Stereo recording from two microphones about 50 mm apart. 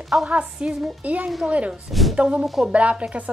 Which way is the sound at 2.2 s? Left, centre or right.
Centre.